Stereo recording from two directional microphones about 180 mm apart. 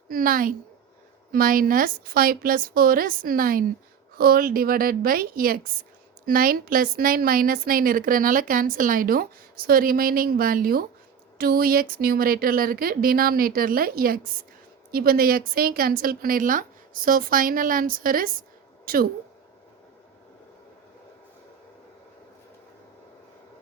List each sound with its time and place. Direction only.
0.1 s a woman's voice: 50° right (ahead or behind)